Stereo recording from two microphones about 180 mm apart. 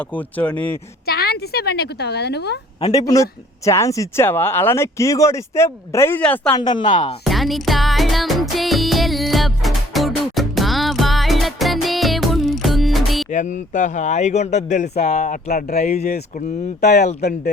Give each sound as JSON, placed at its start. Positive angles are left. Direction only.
{"t": 0.0, "sound": "speech", "side_deg": 10}
{"t": 1.0, "sound": "a woman's voice", "side_deg": 60}
{"t": 2.9, "sound": "speech", "side_deg": 20}
{"t": 6.6, "sound": "speech", "side_deg": 25}
{"t": 7.3, "sound": "music", "side_deg": 0}
{"t": 13.3, "sound": "a man's voice", "side_deg": 40}
{"t": 15.7, "sound": "a man's voice", "side_deg": 40}
{"t": 17.2, "sound": "speech", "side_deg": 65}